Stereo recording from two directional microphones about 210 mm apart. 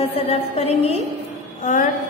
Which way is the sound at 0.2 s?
30° left (ahead or behind).